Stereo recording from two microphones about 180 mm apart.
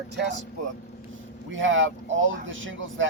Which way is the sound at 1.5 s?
90° right.